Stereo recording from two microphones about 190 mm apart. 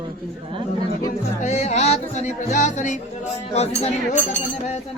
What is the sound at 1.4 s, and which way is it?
Music, 35° left (ahead or behind).